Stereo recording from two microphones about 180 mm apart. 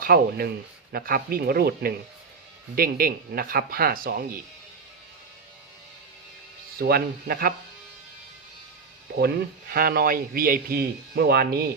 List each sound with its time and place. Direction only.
0.0 s speech: 55° right (ahead or behind)
6.7 s speech: 55° right (ahead or behind)
9.1 s speech: 55° right (ahead or behind)